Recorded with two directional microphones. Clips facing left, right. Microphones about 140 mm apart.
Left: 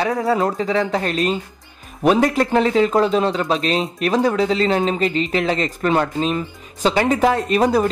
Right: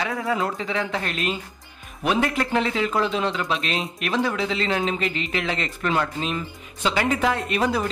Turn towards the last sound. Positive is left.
turn(degrees=40)  # may be behind; listen again after turning